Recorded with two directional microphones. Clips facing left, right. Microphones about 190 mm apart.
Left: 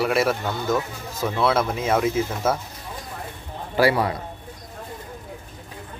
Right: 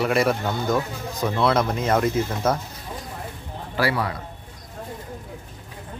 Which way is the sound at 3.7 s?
20° left (ahead or behind).